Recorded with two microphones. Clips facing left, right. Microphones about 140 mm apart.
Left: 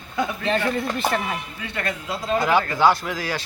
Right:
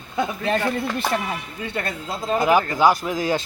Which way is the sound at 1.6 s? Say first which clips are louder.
Right 1 dB; 30° right (ahead or behind).